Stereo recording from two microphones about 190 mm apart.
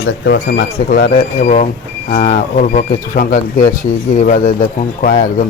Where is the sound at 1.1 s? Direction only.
40° left (ahead or behind).